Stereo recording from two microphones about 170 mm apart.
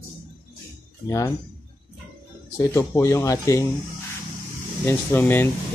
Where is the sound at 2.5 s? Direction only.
15° left (ahead or behind).